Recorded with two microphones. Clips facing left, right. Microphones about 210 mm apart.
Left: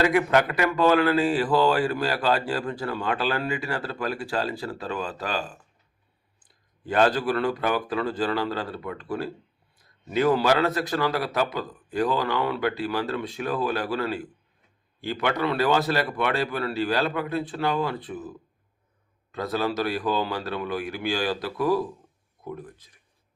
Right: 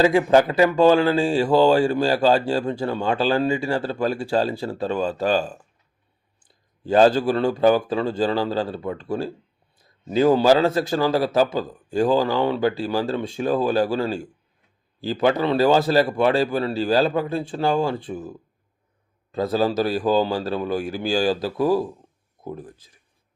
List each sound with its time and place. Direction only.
0.0 s speech: 30° right (ahead or behind)